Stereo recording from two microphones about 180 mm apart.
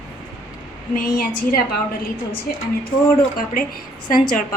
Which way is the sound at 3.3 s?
50° left (ahead or behind).